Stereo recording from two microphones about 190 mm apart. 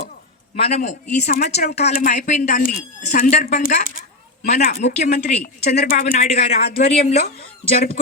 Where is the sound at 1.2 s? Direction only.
50° left (ahead or behind).